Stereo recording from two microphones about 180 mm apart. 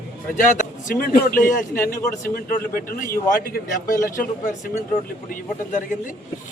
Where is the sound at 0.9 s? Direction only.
50° left (ahead or behind).